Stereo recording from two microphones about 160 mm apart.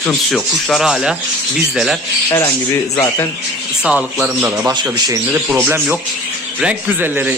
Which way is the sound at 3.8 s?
5° right (ahead or behind).